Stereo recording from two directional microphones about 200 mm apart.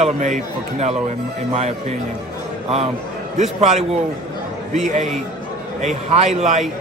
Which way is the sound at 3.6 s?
35° right (ahead or behind).